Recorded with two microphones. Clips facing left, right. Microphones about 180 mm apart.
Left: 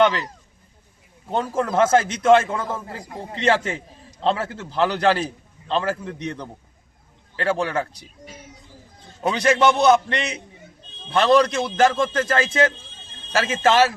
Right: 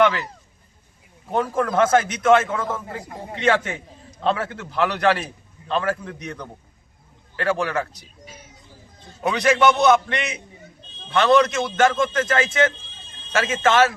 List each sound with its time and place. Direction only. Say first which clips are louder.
1.3 s a man's voice: right 1 dB; 25° left (ahead or behind)
9.2 s a man's voice: even; 30° left (ahead or behind)